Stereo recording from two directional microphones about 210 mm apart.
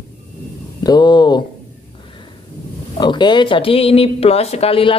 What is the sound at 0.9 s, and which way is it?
Speech, 20° left (ahead or behind).